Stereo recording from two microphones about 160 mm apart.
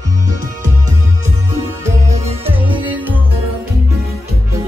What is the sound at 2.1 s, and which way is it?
Music, 40° right (ahead or behind).